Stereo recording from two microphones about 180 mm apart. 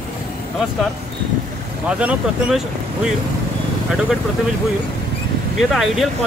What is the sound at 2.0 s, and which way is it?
Speech, 5° right (ahead or behind).